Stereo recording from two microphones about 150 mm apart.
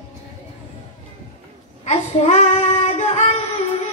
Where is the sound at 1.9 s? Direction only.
50° left (ahead or behind).